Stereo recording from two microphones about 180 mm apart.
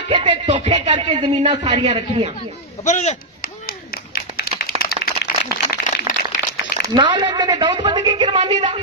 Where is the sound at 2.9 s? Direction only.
40° left (ahead or behind).